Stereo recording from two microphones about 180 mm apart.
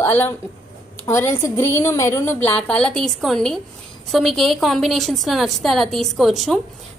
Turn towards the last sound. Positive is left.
turn(degrees=0)  # may be behind; listen again after turning